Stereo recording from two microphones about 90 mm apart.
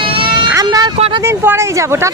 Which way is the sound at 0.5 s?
45° right (ahead or behind).